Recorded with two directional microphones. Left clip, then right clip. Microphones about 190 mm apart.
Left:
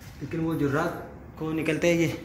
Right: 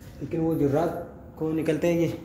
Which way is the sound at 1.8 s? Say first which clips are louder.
Left 3 dB; 10° right (ahead or behind).